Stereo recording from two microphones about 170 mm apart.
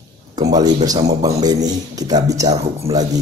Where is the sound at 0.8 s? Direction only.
20° right (ahead or behind).